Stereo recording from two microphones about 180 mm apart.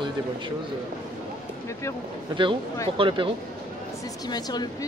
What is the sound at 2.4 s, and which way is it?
Speech, 30° right (ahead or behind).